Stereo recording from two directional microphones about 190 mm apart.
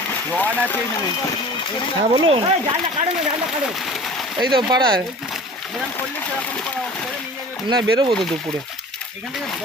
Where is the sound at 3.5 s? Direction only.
Centre (ahead or behind).